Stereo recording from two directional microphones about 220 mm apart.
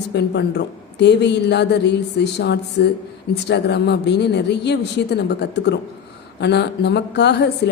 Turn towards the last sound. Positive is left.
turn(degrees=50)  # may be behind; listen again after turning